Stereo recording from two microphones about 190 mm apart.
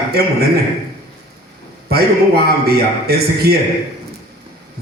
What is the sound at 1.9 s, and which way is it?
A man's voice, 55° right (ahead or behind).